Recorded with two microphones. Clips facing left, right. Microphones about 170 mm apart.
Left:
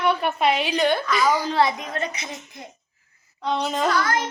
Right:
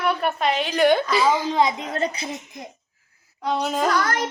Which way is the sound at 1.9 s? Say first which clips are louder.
Right 4 dB; 30° right (ahead or behind).